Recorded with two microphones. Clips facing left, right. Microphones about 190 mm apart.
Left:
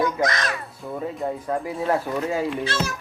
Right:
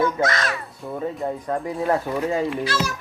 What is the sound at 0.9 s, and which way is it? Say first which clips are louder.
Speech: right 1 dB; centre (ahead or behind).